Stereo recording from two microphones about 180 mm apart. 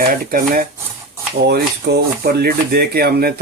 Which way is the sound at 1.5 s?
65° right (ahead or behind).